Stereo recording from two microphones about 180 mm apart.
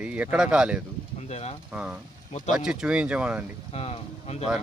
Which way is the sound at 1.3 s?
40° left (ahead or behind).